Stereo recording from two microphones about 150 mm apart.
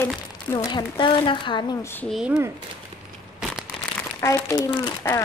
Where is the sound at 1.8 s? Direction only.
15° left (ahead or behind).